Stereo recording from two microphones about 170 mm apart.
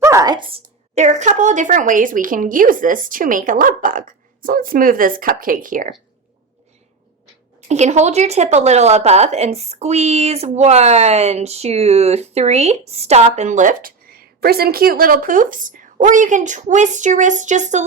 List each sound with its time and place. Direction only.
0.0 s speech: 20° right (ahead or behind)
0.9 s speech: 45° right (ahead or behind)
7.7 s a woman's voice: 40° right (ahead or behind)